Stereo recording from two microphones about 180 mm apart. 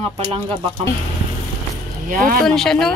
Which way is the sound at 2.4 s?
5° left (ahead or behind).